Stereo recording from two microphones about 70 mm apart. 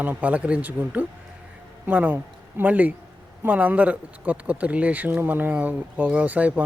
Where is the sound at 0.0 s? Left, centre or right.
Right.